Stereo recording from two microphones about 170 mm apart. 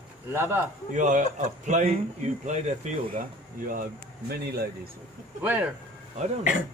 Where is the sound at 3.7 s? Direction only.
60° right (ahead or behind).